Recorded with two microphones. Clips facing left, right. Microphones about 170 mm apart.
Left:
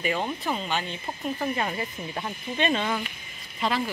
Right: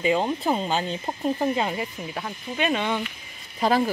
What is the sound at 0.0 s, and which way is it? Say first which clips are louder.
Speech: right 5 dB; 25° right (ahead or behind).